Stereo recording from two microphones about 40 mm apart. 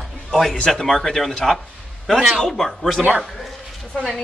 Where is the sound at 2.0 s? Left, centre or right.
Centre.